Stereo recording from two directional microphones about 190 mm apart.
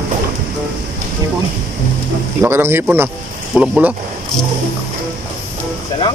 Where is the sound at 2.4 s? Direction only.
10° right (ahead or behind).